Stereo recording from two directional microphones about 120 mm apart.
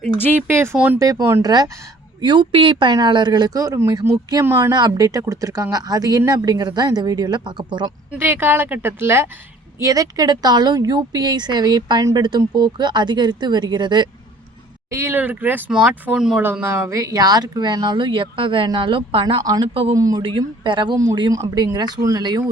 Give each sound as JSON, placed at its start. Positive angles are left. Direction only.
{"t": 0.4, "sound": "speech", "side_deg": -20}
{"t": 0.9, "sound": "a woman's voice", "side_deg": -30}
{"t": 4.7, "sound": "a woman's voice", "side_deg": -30}
{"t": 8.1, "sound": "a woman's voice", "side_deg": -15}
{"t": 14.8, "sound": "speech", "side_deg": -25}
{"t": 16.4, "sound": "a woman's voice", "side_deg": -15}
{"t": 19.4, "sound": "a woman's voice", "side_deg": -30}
{"t": 19.6, "sound": "speech", "side_deg": -50}
{"t": 19.9, "sound": "speech", "side_deg": -30}
{"t": 20.7, "sound": "a woman's voice", "side_deg": -40}
{"t": 21.2, "sound": "a woman's voice", "side_deg": -30}